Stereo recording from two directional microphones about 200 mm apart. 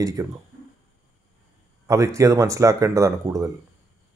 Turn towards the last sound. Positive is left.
turn(degrees=-15)  # may be behind; listen again after turning